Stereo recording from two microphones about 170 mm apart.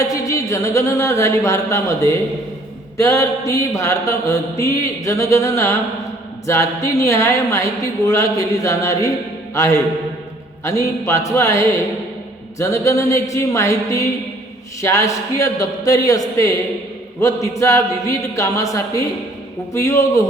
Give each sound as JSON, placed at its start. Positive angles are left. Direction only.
{"t": 0.0, "sound": "a sound", "side_deg": 20}
{"t": 3.0, "sound": "mantra", "side_deg": 15}
{"t": 14.8, "sound": "speech", "side_deg": 15}
{"t": 19.7, "sound": "mantra", "side_deg": 15}